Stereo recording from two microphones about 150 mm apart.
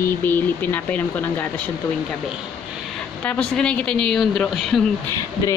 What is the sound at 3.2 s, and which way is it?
Speech, 5° left (ahead or behind).